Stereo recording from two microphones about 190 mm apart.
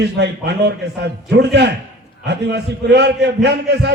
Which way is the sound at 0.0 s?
60° right (ahead or behind).